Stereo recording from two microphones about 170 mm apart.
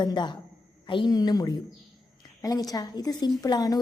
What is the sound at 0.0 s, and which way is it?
A woman's voice, 25° left (ahead or behind).